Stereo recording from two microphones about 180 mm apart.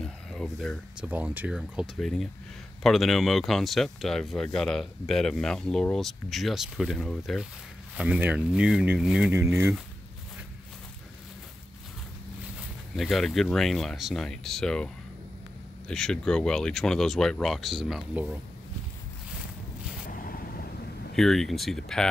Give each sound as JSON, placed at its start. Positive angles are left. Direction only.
{"t": 0.0, "sound": "a sound", "side_deg": 0}
{"t": 1.0, "sound": "speech", "side_deg": -10}
{"t": 12.9, "sound": "speech", "side_deg": 0}
{"t": 15.9, "sound": "speech", "side_deg": 5}
{"t": 20.1, "sound": "vehicle", "side_deg": 50}
{"t": 21.2, "sound": "speech", "side_deg": 0}